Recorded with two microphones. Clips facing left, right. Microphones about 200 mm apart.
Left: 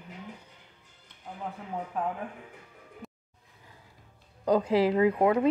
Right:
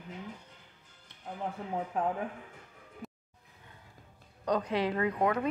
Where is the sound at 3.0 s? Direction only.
Centre (ahead or behind).